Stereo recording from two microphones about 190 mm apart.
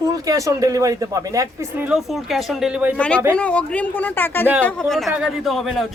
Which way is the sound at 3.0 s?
5° left (ahead or behind).